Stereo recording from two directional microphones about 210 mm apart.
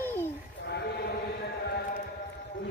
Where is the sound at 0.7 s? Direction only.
50° left (ahead or behind).